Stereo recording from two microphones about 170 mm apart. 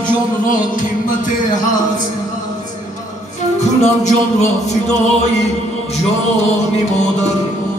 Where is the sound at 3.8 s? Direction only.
45° left (ahead or behind).